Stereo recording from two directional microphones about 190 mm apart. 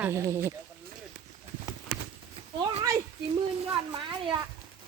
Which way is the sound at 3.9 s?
25° right (ahead or behind).